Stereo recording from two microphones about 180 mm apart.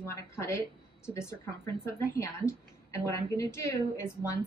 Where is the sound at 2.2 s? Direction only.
15° left (ahead or behind).